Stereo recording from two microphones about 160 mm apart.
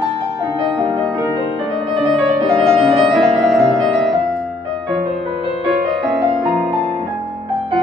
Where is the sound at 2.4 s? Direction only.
35° right (ahead or behind).